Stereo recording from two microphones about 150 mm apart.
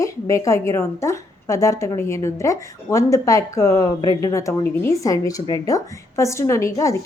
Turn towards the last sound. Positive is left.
turn(degrees=20)  # may be behind; listen again after turning